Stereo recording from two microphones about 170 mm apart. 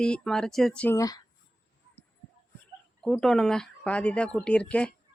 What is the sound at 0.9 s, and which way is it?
Speech, 20° left (ahead or behind).